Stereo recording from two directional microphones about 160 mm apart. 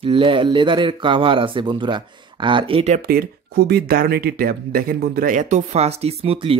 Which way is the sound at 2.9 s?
70° right (ahead or behind).